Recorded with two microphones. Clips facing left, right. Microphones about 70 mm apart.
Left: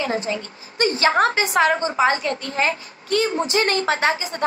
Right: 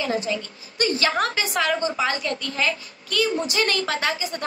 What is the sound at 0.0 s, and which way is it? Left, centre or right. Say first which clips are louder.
A woman's voice: left 1 dB; left.